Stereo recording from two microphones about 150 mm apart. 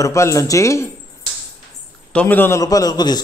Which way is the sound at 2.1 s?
10° left (ahead or behind).